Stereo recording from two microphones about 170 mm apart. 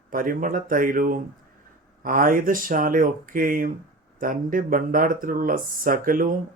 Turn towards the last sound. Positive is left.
turn(degrees=-55)  # may be behind; listen again after turning